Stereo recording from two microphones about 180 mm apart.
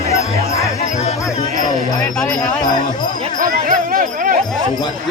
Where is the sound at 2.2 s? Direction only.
20° left (ahead or behind).